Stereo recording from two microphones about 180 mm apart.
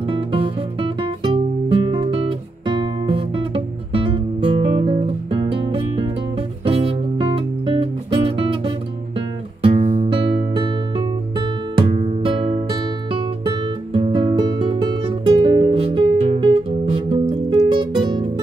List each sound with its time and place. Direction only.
0.1 s music: 30° right (ahead or behind)
9.6 s music: 45° right (ahead or behind)
10.0 s music: 25° right (ahead or behind)
11.9 s music: 40° right (ahead or behind)